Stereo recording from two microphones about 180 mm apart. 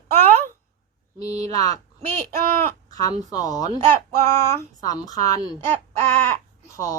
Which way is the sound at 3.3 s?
20° left (ahead or behind).